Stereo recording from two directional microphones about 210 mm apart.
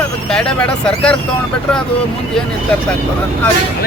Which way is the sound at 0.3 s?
5° left (ahead or behind).